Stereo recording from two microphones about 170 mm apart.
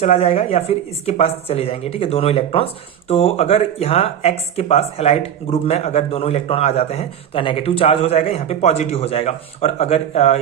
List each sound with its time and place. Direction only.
0.0 s speech: 35° left (ahead or behind)